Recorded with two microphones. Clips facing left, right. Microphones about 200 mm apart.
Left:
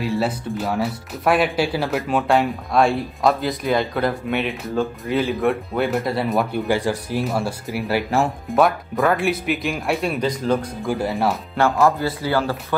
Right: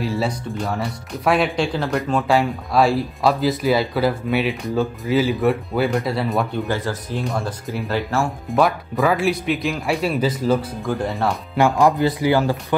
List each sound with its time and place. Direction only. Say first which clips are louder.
0.0 s speech: left 1 dB; centre (ahead or behind)
6.7 s speech: left 3 dB; 15° left (ahead or behind)
8.5 s speech: right 1 dB; centre (ahead or behind)
10.9 s speech: left 1 dB; 5° left (ahead or behind)
11.5 s speech: right 2 dB; 15° right (ahead or behind)